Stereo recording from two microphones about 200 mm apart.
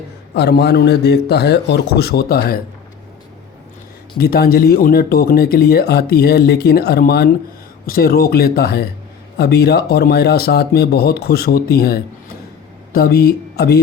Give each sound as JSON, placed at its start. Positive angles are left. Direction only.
{"t": 0.3, "sound": "a man's voice", "side_deg": 55}
{"t": 4.2, "sound": "speech", "side_deg": 50}